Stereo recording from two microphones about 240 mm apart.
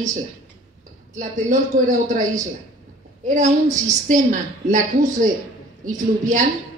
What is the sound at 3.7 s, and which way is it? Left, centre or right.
A woman's voice, right.